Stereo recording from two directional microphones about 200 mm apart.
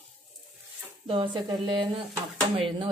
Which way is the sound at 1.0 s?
25° right (ahead or behind).